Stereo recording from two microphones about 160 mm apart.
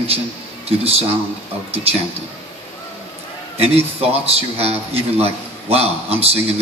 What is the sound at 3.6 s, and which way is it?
A man's voice, 40° right (ahead or behind).